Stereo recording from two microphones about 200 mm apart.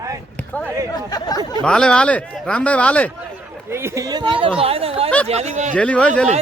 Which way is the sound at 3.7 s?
10° right (ahead or behind).